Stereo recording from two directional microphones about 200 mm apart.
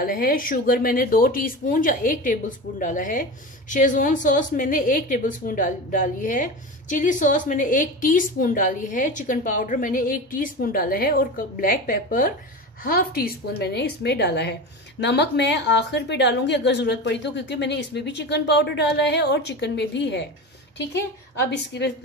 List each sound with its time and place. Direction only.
0.0 s a woman's voice: 45° left (ahead or behind)